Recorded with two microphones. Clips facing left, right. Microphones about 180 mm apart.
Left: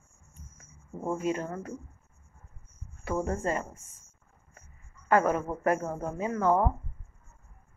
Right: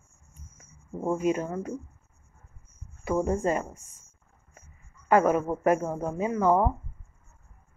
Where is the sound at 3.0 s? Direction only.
15° right (ahead or behind).